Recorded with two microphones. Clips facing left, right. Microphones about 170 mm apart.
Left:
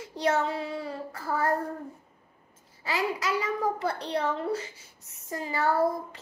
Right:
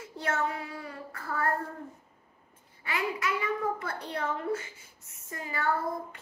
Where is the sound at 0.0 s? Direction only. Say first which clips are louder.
Left 7 dB; 80° left.